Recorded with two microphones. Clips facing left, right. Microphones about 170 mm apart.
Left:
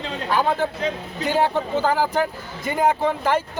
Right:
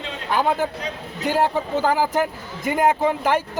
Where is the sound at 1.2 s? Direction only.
5° right (ahead or behind).